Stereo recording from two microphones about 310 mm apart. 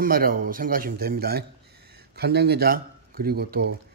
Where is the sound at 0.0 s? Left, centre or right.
Right.